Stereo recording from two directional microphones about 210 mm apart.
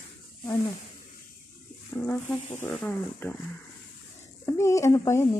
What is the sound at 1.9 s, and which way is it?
Speech, 10° left (ahead or behind).